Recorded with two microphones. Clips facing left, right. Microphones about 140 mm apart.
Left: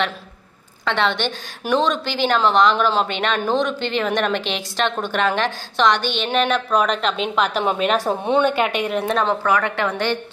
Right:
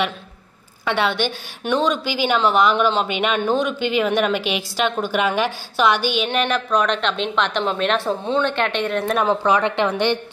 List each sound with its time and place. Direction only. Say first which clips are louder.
0.8 s a woman's voice: even; 10° right (ahead or behind); by 9.1 s 10° left (ahead or behind)
9.3 s a woman's voice: right 2 dB; 20° right (ahead or behind)